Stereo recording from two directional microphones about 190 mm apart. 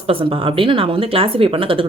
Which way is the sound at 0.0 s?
30° right (ahead or behind).